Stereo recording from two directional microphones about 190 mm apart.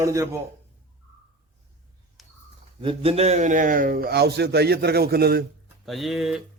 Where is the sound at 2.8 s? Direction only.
30° right (ahead or behind); by 5.4 s 55° right (ahead or behind).